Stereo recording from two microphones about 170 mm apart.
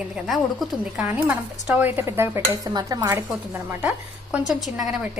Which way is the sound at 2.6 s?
25° right (ahead or behind).